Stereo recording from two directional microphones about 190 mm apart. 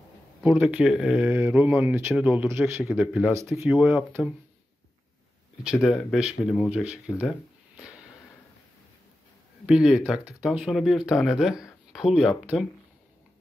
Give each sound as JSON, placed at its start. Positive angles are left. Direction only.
{"t": 0.4, "sound": "speech", "side_deg": -5}
{"t": 5.6, "sound": "speech", "side_deg": -5}
{"t": 9.7, "sound": "speech", "side_deg": -5}